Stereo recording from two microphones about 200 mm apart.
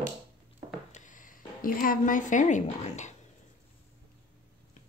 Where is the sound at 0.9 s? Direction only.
40° left (ahead or behind).